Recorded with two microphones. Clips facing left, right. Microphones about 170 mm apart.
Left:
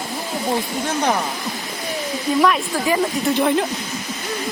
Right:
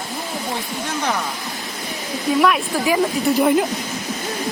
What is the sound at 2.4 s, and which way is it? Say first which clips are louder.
Speech: even; 5° right (ahead or behind).